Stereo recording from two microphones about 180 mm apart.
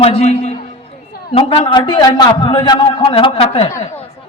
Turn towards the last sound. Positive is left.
turn(degrees=30)  # may be behind; listen again after turning